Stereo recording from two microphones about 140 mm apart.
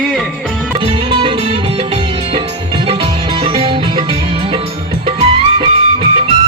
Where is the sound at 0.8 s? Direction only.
35° right (ahead or behind).